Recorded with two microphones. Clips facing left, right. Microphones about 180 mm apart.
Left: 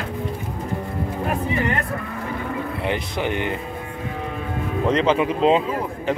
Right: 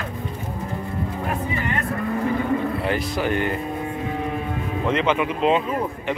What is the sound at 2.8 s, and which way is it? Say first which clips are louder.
Speech: right 1 dB; 20° left (ahead or behind).